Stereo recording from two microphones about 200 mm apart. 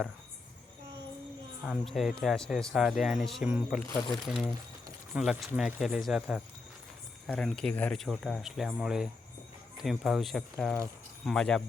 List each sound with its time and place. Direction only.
1.6 s speech: centre (ahead or behind)